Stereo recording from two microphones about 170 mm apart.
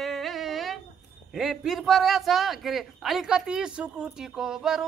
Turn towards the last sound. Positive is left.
turn(degrees=-5)  # may be behind; listen again after turning